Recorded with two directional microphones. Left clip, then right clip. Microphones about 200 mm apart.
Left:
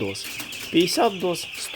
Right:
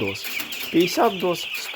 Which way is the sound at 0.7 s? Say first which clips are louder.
Right 1 dB; 10° left (ahead or behind).